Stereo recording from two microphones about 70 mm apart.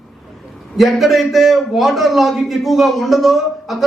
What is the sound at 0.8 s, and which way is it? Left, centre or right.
A man's voice, centre.